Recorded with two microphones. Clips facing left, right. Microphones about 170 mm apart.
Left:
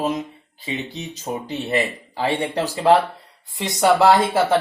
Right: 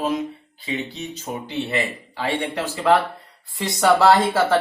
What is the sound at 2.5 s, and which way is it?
Speech, 35° left (ahead or behind).